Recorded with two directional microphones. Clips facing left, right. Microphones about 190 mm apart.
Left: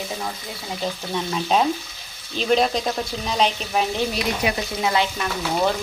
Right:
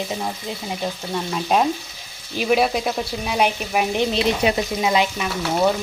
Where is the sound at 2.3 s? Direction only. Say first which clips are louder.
Right 1 dB; 10° right (ahead or behind).